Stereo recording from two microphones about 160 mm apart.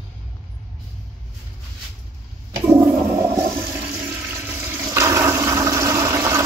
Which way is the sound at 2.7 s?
20° right (ahead or behind).